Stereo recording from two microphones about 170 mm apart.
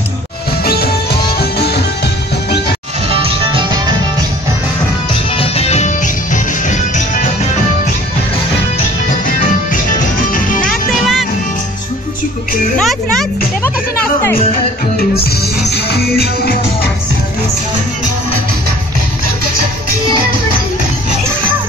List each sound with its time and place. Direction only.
0.7 s music: 65° left (ahead or behind)
3.1 s music: 35° right (ahead or behind)
5.3 s music: 35° left (ahead or behind)
9.7 s music: 50° left (ahead or behind)
10.7 s music: centre (ahead or behind)
12.7 s music: 5° left (ahead or behind)
15.1 s music: 70° left (ahead or behind)